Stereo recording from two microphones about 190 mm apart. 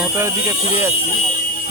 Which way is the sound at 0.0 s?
15° right (ahead or behind).